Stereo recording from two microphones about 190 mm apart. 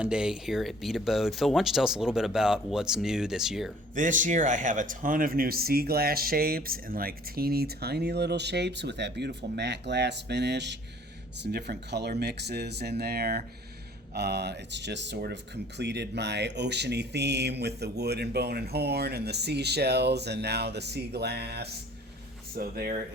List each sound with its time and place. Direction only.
0.0 s speech: 5° right (ahead or behind)
3.9 s speech: 45° right (ahead or behind)